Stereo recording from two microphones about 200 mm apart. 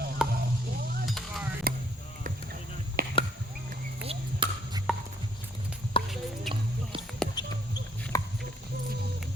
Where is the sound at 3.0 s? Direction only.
45° right (ahead or behind).